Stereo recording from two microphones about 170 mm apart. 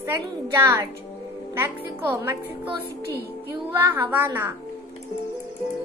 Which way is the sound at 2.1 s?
20° right (ahead or behind).